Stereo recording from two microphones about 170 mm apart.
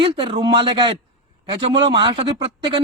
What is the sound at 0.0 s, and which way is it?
Speech, 30° right (ahead or behind).